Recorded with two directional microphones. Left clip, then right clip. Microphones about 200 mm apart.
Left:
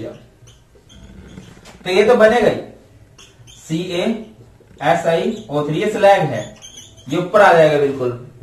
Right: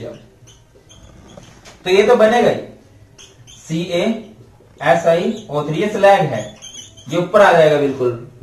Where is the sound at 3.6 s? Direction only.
Centre (ahead or behind).